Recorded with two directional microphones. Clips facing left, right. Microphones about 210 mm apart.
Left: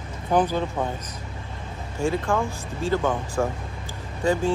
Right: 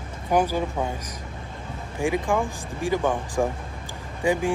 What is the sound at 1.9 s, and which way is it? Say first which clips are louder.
Speech: even; 15° right (ahead or behind).